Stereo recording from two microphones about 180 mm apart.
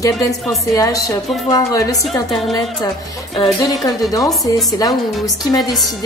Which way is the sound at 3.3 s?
25° left (ahead or behind).